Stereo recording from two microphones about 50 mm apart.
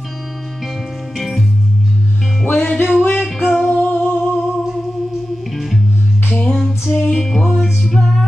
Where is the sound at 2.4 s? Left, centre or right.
Left.